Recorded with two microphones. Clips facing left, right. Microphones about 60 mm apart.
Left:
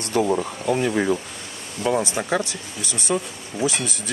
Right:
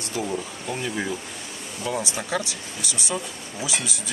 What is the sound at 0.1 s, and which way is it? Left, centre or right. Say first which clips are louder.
Speech: left 8 dB; left.